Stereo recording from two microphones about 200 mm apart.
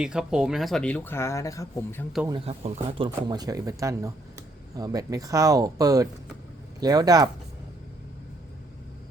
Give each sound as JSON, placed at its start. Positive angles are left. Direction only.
{"t": 0.0, "sound": "speech", "side_deg": -5}
{"t": 2.2, "sound": "speech", "side_deg": -25}